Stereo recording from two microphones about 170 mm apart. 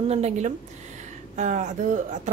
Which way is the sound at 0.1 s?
40° right (ahead or behind).